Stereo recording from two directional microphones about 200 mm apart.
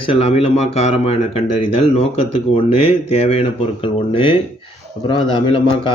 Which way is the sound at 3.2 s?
30° left (ahead or behind).